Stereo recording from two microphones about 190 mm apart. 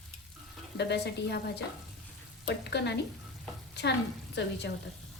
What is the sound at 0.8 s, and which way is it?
A woman's voice, 60° left (ahead or behind).